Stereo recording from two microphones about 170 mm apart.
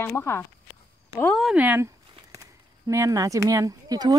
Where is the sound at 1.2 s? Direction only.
Centre (ahead or behind).